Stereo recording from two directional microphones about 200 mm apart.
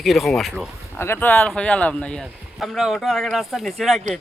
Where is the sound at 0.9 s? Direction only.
10° left (ahead or behind).